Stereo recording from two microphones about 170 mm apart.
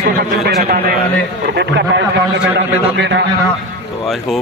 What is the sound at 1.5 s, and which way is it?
A man's voice, 90° right.